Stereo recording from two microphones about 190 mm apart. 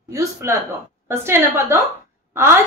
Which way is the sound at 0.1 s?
15° right (ahead or behind).